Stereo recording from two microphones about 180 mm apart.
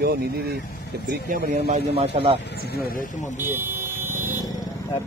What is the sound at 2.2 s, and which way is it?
Speech, 35° right (ahead or behind).